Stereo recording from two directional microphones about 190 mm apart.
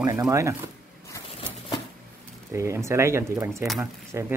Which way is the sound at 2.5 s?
15° right (ahead or behind).